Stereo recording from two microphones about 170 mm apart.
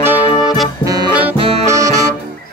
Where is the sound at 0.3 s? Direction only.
20° left (ahead or behind).